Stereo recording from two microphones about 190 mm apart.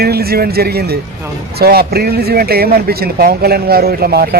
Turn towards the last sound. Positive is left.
turn(degrees=-55)  # may be behind; listen again after turning